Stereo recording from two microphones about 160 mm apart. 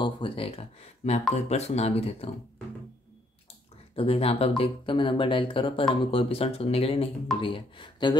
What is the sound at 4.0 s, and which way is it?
Speech, 40° left (ahead or behind).